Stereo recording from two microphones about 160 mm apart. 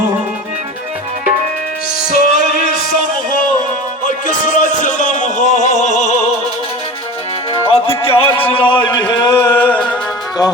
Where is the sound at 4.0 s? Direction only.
55° left (ahead or behind).